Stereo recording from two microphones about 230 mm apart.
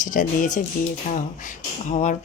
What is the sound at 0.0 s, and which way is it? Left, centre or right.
Speech, left.